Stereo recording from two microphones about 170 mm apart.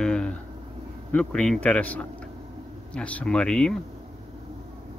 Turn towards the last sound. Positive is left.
turn(degrees=5)  # may be behind; listen again after turning